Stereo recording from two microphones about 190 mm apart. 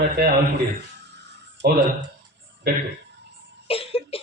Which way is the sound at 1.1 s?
65° right (ahead or behind).